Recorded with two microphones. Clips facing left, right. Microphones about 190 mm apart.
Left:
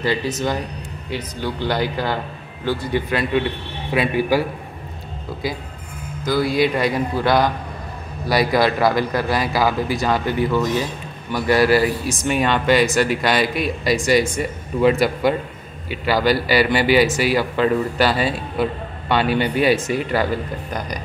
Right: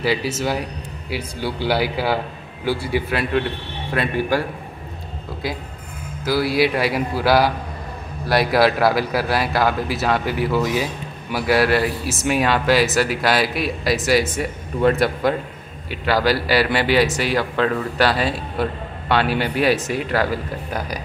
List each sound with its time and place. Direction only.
0.0 s speech: 10° right (ahead or behind)
3.9 s a man's voice: 5° left (ahead or behind)
6.2 s a man's voice: 5° right (ahead or behind)